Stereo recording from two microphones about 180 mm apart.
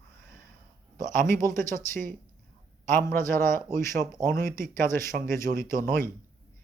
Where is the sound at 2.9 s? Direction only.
50° right (ahead or behind).